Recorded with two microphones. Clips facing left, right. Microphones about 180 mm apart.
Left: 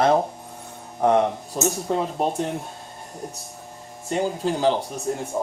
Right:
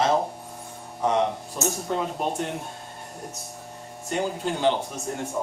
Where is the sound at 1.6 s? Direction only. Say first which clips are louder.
Left 4 dB; 40° left (ahead or behind).